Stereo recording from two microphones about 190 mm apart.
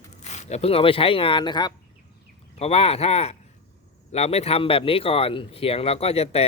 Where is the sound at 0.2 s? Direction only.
35° left (ahead or behind).